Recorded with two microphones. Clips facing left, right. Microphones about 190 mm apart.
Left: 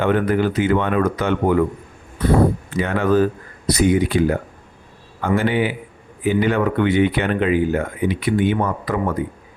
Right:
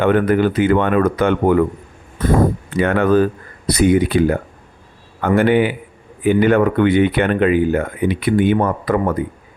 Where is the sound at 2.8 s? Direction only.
60° right (ahead or behind).